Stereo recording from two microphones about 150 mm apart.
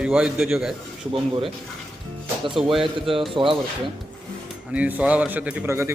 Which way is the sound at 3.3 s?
35° right (ahead or behind).